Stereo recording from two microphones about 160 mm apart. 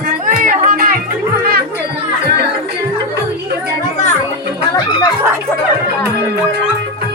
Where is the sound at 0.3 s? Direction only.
60° right (ahead or behind).